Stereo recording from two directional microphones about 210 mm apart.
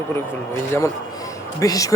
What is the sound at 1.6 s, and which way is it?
Speech, 15° left (ahead or behind).